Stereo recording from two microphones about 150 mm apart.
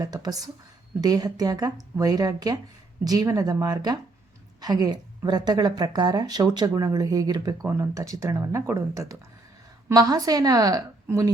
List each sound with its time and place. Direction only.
0.0 s speech: 25° right (ahead or behind)